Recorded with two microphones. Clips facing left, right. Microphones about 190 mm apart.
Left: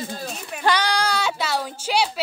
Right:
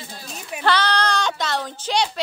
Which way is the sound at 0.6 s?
10° left (ahead or behind).